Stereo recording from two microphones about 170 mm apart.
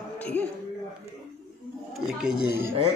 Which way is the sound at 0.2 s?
10° left (ahead or behind).